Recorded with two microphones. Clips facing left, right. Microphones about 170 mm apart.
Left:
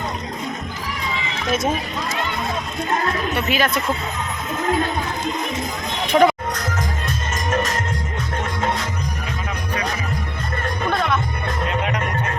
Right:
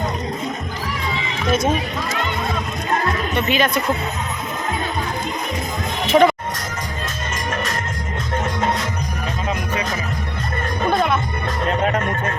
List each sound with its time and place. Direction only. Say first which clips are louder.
3.3 s speech: right 3 dB; 5° left (ahead or behind)
6.1 s speech: right 1 dB; centre (ahead or behind)
11.8 s music: right 4 dB; 45° right (ahead or behind)